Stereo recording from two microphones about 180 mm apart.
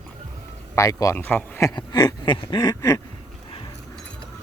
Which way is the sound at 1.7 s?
25° left (ahead or behind).